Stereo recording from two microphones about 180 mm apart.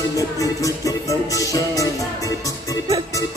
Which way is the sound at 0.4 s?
20° left (ahead or behind).